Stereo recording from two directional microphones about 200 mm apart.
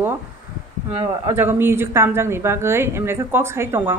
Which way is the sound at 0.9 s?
30° right (ahead or behind).